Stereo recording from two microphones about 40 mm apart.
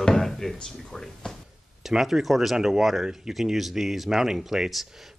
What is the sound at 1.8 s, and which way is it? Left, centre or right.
Speech, centre.